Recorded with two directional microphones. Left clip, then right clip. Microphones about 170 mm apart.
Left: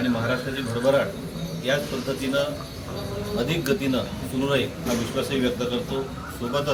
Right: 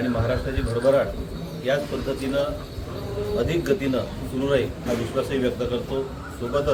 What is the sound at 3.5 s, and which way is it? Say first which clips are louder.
Speech: right 1 dB; 5° right (ahead or behind).